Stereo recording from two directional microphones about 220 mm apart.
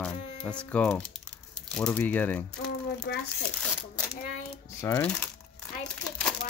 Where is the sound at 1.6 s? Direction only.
5° left (ahead or behind).